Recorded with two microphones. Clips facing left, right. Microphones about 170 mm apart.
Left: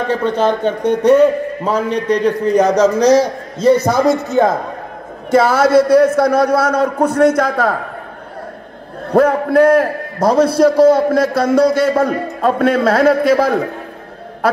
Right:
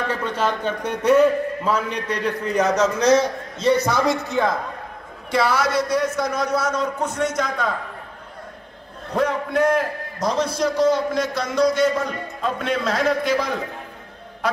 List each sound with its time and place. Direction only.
0.1 s a man's voice: 30° left (ahead or behind); by 7.8 s 60° left (ahead or behind)
9.1 s a man's voice: 55° left (ahead or behind)